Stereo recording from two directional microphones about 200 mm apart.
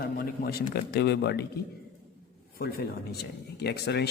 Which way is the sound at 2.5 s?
50° left (ahead or behind).